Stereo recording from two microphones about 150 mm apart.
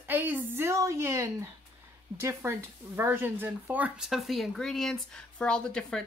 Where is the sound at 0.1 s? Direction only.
10° right (ahead or behind).